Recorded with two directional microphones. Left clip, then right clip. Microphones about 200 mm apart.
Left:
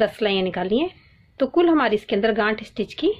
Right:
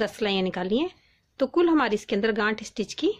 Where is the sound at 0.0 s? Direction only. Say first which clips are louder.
Left 5 dB; 45° right (ahead or behind).